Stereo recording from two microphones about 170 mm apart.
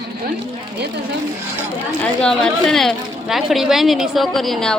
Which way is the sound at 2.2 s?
5° left (ahead or behind).